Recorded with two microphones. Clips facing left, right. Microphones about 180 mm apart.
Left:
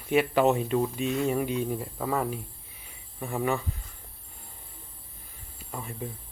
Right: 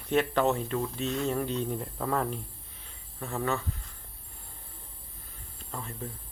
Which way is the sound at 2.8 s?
15° left (ahead or behind).